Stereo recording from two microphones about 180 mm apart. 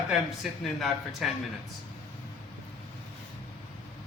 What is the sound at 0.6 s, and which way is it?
Speech, centre (ahead or behind).